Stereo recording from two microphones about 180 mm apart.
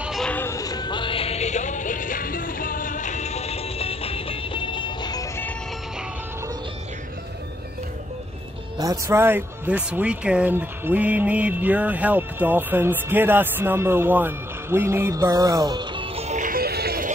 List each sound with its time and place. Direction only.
0.0 s music: centre (ahead or behind); by 5.3 s 20° left (ahead or behind)
8.7 s speech: 20° right (ahead or behind); by 17.1 s 60° right (ahead or behind)